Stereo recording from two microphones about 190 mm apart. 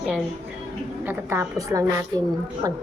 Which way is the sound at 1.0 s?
10° right (ahead or behind).